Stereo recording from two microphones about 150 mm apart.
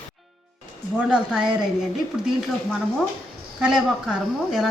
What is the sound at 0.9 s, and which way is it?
Speech, 5° right (ahead or behind).